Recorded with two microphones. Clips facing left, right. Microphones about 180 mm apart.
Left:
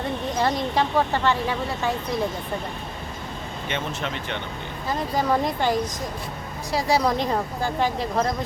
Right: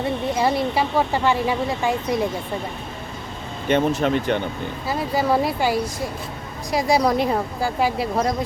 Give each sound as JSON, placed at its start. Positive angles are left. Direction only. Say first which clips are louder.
{"t": 0.3, "sound": "speech", "louder": "right 1 dB", "side_deg": -10}
{"t": 3.7, "sound": "speech", "louder": "right 11 dB", "side_deg": -40}
{"t": 4.9, "sound": "speech", "louder": "right 2 dB", "side_deg": -10}